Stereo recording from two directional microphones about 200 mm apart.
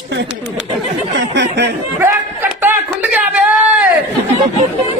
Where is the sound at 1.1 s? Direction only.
60° right (ahead or behind).